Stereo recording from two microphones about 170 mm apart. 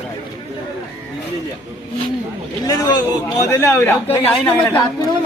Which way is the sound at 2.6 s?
20° left (ahead or behind).